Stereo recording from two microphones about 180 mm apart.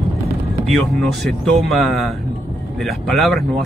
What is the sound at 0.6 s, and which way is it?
Speech, centre (ahead or behind).